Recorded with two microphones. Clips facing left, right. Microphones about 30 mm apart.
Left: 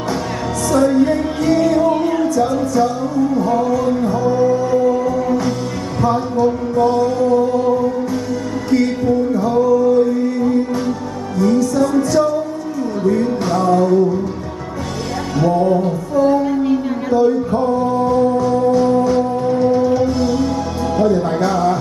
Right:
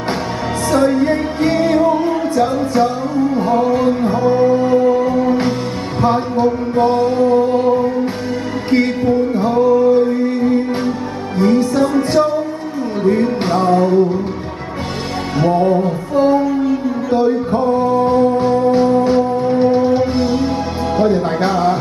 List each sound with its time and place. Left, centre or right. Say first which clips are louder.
0.7 s music: even; right
15.3 s music: right 1 dB; right
17.1 s male singing: left 1 dB; right
18.4 s music: right 1 dB; right